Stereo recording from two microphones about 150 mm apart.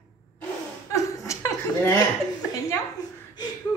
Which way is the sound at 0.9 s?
20° left (ahead or behind).